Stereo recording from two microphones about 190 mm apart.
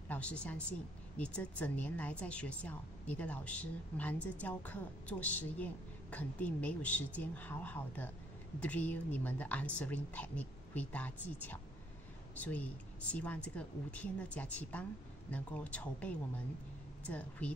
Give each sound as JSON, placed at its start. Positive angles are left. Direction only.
{"t": 0.1, "sound": "speech", "side_deg": 5}